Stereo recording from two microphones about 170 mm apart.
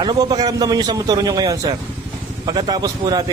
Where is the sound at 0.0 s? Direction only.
25° right (ahead or behind).